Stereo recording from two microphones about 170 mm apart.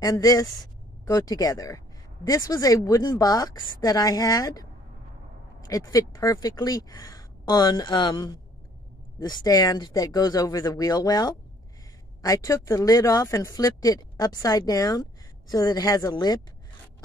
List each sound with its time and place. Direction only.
0.0 s speech: 20° left (ahead or behind)
5.7 s speech: 20° left (ahead or behind)